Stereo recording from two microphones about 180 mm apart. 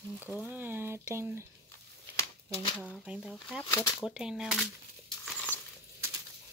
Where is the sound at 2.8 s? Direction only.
5° right (ahead or behind).